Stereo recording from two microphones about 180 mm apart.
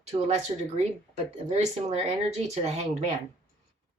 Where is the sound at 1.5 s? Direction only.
40° right (ahead or behind).